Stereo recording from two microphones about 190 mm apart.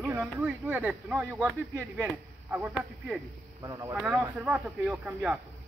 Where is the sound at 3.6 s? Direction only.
20° right (ahead or behind).